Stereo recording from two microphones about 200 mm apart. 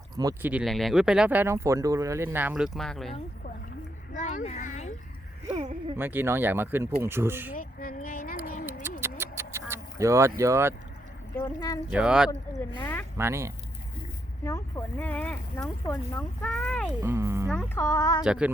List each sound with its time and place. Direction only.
0.2 s speech: 15° right (ahead or behind)
0.5 s speech: centre (ahead or behind)
4.1 s a sound: 40° left (ahead or behind)
6.0 s speech: 10° right (ahead or behind)
7.5 s a sound: 45° left (ahead or behind)
8.6 s a sound: 10° right (ahead or behind)
11.3 s speech: 20° left (ahead or behind)
11.9 s speech: 5° right (ahead or behind)
12.8 s speech: 10° left (ahead or behind)
13.1 s speech: 15° right (ahead or behind)
14.4 s speech: 15° left (ahead or behind)
17.0 s speech: 15° right (ahead or behind)
17.7 s speech: 15° left (ahead or behind)
18.2 s speech: 5° right (ahead or behind)